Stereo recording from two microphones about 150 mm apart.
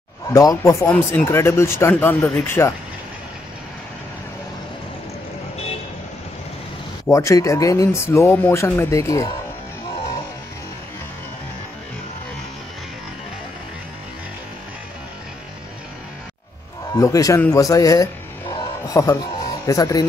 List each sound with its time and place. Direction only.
0.3 s speech: 20° left (ahead or behind)
7.1 s speech: 20° left (ahead or behind)
16.9 s speech: 20° left (ahead or behind)
18.5 s music: 25° left (ahead or behind)
19.6 s speech: 25° left (ahead or behind)